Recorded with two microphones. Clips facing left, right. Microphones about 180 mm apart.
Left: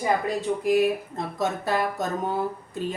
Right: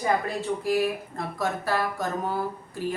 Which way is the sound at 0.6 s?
20° left (ahead or behind).